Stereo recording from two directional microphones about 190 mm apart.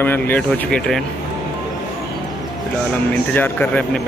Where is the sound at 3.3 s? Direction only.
10° left (ahead or behind).